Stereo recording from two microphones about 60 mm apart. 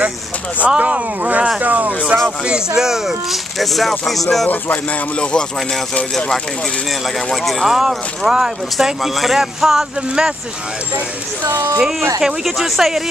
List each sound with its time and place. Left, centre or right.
0.7 s speech: right
2.4 s speech: centre
7.4 s speech: centre
11.5 s speech: right
12.2 s speech: centre